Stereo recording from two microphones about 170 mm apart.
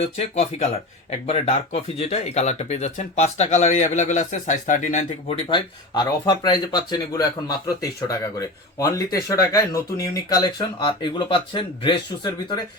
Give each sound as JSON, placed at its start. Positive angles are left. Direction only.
{"t": 0.0, "sound": "speech", "side_deg": 35}
{"t": 5.5, "sound": "speech", "side_deg": 25}